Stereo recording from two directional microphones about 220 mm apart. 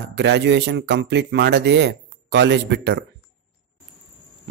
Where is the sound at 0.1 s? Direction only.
50° right (ahead or behind).